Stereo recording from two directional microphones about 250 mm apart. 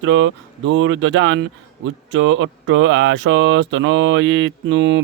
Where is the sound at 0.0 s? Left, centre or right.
Right.